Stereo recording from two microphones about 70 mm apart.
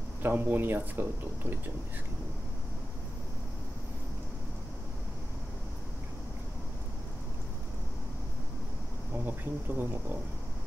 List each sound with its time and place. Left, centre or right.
0.2 s speech: right
9.2 s speech: right